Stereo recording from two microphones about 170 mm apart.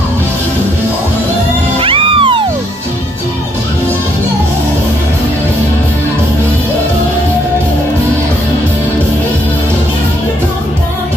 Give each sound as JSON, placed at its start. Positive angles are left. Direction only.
{"t": 1.8, "sound": "cat", "side_deg": -30}